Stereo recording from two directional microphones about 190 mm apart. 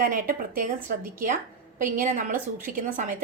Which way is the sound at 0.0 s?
45° right (ahead or behind).